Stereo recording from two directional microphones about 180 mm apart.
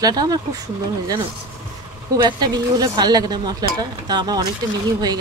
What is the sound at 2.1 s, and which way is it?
Speech, 20° right (ahead or behind).